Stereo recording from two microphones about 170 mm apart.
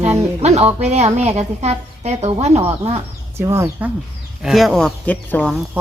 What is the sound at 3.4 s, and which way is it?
Speech, 15° right (ahead or behind).